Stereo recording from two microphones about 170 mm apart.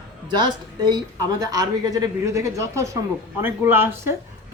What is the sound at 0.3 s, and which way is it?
A woman's voice, 25° right (ahead or behind).